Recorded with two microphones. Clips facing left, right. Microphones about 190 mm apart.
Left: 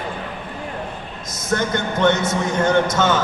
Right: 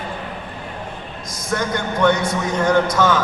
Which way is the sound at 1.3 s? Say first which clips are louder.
Left 1 dB; 25° left (ahead or behind).